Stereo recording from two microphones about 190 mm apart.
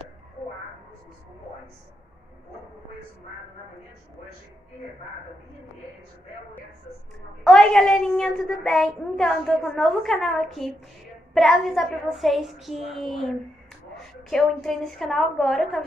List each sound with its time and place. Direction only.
7.4 s a woman's voice: centre (ahead or behind)